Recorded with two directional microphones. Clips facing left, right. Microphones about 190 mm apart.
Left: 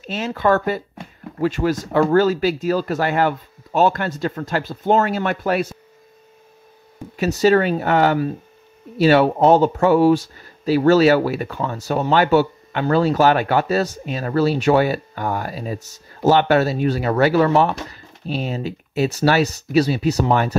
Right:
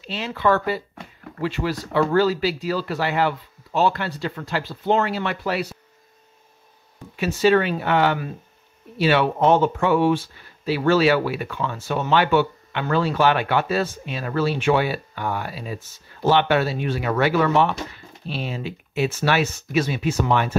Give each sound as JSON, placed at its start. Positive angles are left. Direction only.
{"t": 0.0, "sound": "speech", "side_deg": 45}
{"t": 7.2, "sound": "speech", "side_deg": 40}